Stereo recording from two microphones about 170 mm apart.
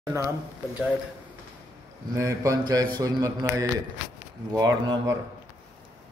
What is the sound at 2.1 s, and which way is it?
A man's voice, 20° right (ahead or behind).